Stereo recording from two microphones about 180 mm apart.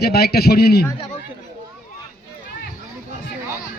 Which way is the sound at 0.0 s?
60° left (ahead or behind).